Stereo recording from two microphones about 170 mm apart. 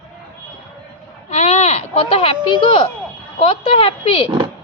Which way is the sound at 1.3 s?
40° left (ahead or behind).